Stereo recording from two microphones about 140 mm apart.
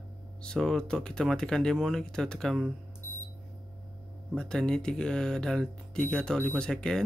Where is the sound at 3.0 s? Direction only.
20° left (ahead or behind).